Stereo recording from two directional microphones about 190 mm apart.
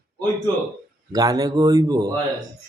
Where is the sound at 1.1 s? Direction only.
20° right (ahead or behind).